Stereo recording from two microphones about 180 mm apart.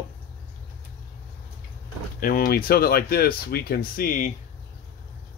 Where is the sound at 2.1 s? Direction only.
55° left (ahead or behind).